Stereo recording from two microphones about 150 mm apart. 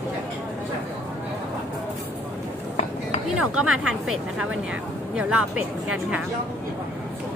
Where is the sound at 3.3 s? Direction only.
5° right (ahead or behind).